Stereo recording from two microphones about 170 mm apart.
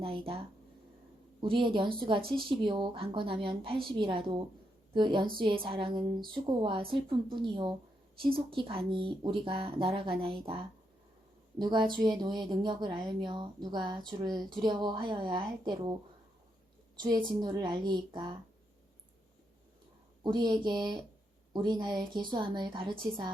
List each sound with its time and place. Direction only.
0.0 s a woman's voice: 35° right (ahead or behind)
11.6 s a woman's voice: 25° right (ahead or behind)
17.0 s a woman's voice: 25° right (ahead or behind)
20.2 s a woman's voice: 25° right (ahead or behind)